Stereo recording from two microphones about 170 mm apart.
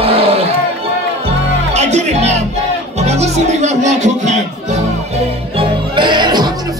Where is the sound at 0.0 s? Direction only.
35° right (ahead or behind).